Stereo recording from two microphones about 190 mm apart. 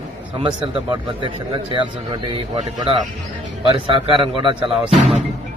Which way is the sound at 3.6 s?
25° right (ahead or behind).